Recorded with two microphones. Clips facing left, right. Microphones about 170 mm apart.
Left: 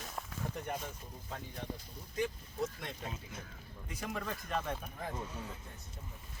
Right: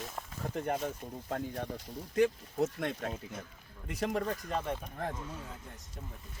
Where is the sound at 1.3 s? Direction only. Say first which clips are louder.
Right 7 dB; 70° right (ahead or behind).